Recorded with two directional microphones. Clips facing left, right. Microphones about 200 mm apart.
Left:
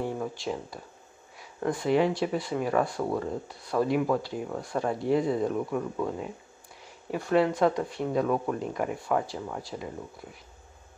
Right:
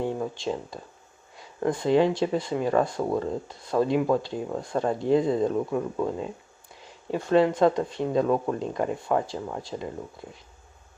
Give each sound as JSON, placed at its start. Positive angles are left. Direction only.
{"t": 0.0, "sound": "a sound", "side_deg": -25}
{"t": 1.7, "sound": "speech", "side_deg": -25}
{"t": 7.2, "sound": "speech", "side_deg": -25}